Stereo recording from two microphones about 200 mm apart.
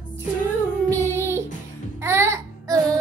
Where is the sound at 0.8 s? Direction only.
15° right (ahead or behind).